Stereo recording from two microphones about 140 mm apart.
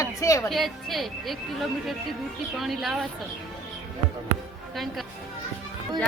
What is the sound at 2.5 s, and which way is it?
Speech, centre (ahead or behind).